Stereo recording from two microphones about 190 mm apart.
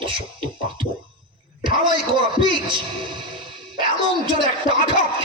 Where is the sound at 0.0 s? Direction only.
25° right (ahead or behind).